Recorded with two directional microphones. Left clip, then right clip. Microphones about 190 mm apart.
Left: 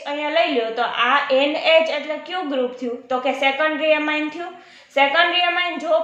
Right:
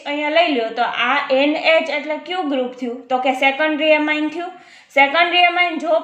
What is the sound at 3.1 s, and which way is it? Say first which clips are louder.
A woman's voice: right 3 dB; 30° right (ahead or behind).